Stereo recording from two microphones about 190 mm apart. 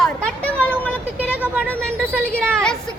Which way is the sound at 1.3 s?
10° right (ahead or behind).